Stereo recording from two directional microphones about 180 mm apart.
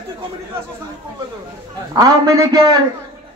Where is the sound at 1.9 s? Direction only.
20° right (ahead or behind).